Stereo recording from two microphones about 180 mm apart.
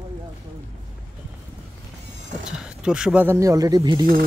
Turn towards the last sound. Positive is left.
turn(degrees=-20)  # may be behind; listen again after turning